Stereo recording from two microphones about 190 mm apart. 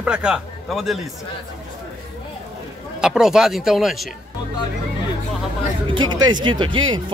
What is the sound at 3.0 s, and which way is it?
Speech, 5° right (ahead or behind).